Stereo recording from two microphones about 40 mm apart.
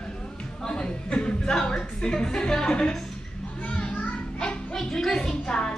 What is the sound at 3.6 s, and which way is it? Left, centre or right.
Children playing, left.